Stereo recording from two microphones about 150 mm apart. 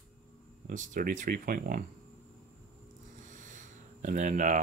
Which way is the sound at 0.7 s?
60° right (ahead or behind).